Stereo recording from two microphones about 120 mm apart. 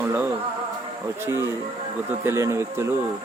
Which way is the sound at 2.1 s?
20° right (ahead or behind).